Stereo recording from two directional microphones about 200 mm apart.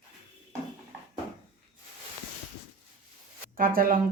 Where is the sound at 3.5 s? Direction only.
45° right (ahead or behind).